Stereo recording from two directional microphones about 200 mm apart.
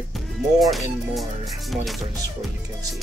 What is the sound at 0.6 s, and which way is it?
Speech, centre (ahead or behind).